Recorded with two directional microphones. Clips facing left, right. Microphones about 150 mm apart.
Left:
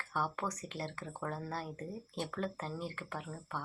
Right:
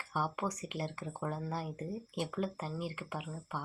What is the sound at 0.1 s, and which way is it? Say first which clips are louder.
A woman's voice: right 1 dB; 10° right (ahead or behind).